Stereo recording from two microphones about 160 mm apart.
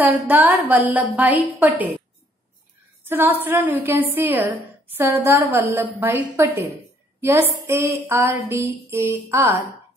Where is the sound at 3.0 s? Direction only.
15° right (ahead or behind).